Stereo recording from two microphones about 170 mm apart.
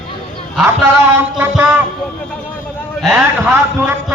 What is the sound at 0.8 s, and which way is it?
A man's voice, 15° right (ahead or behind).